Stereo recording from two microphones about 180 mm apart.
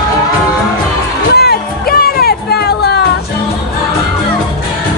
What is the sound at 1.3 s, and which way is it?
Music, 60° left (ahead or behind).